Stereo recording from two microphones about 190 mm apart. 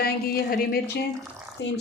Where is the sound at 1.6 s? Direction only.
70° left (ahead or behind).